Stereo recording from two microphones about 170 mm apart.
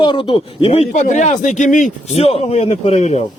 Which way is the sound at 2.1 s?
35° left (ahead or behind).